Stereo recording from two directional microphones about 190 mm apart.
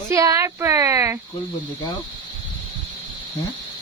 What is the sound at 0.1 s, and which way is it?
Speech, 15° right (ahead or behind).